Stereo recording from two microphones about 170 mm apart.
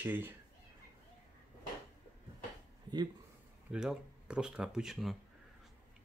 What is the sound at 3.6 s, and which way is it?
Speech, 5° right (ahead or behind).